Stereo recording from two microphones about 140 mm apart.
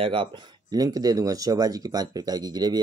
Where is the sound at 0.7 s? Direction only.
25° right (ahead or behind).